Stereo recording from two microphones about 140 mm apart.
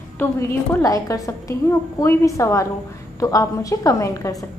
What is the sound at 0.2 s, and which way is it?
A woman's voice, 15° left (ahead or behind).